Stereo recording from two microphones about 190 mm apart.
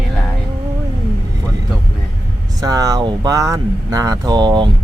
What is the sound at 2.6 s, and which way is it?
Speech, 20° right (ahead or behind).